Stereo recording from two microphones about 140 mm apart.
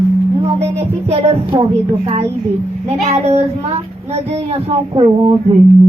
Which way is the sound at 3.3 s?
50° right (ahead or behind).